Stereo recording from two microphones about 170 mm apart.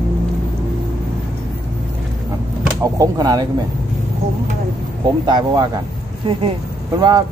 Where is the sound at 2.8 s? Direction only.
20° right (ahead or behind).